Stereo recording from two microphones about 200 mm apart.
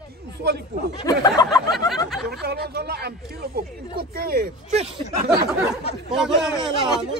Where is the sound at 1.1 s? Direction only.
20° left (ahead or behind).